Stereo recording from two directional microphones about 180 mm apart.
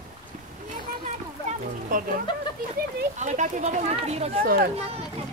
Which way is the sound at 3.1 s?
40° right (ahead or behind).